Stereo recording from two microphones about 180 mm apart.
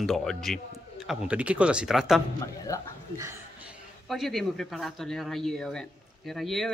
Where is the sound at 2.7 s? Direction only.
15° left (ahead or behind).